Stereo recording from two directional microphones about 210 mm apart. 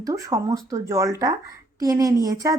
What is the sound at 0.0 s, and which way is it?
A woman's voice, 15° right (ahead or behind).